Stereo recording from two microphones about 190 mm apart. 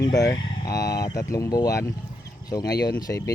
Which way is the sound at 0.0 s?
20° left (ahead or behind).